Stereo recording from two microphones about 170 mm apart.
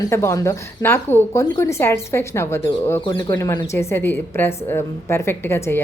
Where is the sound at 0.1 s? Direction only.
20° left (ahead or behind).